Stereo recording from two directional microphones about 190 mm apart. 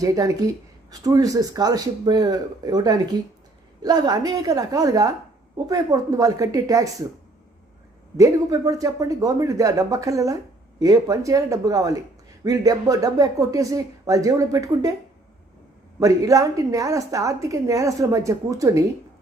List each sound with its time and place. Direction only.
0.0 s a woman's voice: 15° right (ahead or behind)
8.1 s a woman's voice: 15° right (ahead or behind)
16.0 s a woman's voice: 15° right (ahead or behind)